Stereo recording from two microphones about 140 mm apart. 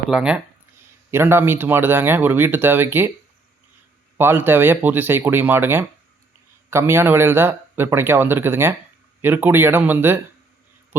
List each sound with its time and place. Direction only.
0.1 s speech: 5° right (ahead or behind)
4.2 s speech: 15° right (ahead or behind)